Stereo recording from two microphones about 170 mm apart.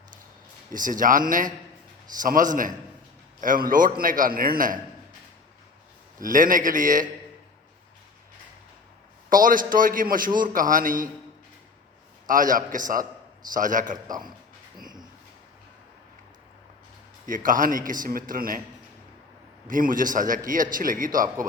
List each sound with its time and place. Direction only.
0.7 s a man's voice: 50° right (ahead or behind)
6.1 s a man's voice: 55° right (ahead or behind)
9.3 s a man's voice: 55° right (ahead or behind)
12.2 s a man's voice: 50° right (ahead or behind)
17.2 s a man's voice: 50° right (ahead or behind)
19.6 s a man's voice: 50° right (ahead or behind)